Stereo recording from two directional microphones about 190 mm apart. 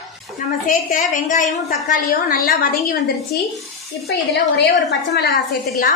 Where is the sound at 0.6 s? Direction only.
40° left (ahead or behind).